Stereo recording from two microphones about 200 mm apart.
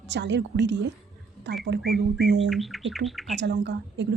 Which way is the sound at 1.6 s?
55° right (ahead or behind).